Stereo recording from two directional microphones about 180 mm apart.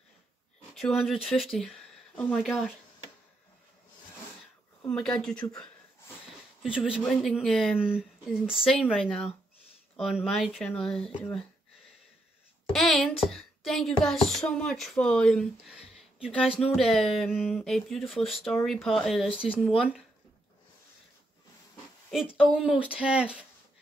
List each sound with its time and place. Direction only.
0.7 s speech: centre (ahead or behind)
4.8 s speech: 5° left (ahead or behind)
12.7 s a sound: centre (ahead or behind)
13.3 s a woman's voice: centre (ahead or behind)
22.4 s speech: 5° right (ahead or behind)